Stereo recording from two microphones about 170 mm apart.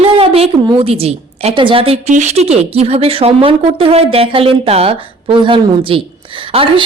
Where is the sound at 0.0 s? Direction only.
35° right (ahead or behind).